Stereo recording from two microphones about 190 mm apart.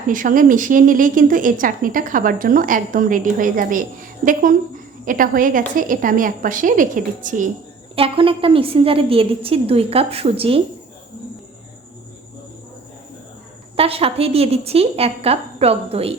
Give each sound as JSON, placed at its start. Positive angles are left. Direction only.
{"t": 0.1, "sound": "a woman's voice", "side_deg": -45}
{"t": 7.9, "sound": "a woman's voice", "side_deg": -30}
{"t": 13.7, "sound": "a woman's voice", "side_deg": -30}